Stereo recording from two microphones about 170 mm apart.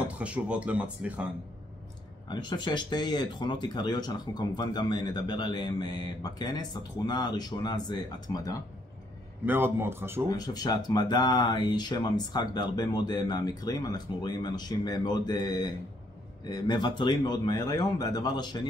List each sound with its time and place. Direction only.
0.0 s speech: 10° right (ahead or behind)
2.2 s speech: 25° left (ahead or behind)
9.5 s speech: 15° right (ahead or behind)
10.3 s speech: 20° left (ahead or behind)